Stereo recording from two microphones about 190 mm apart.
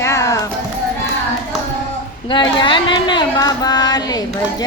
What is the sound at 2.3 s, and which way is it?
Speech, 25° left (ahead or behind).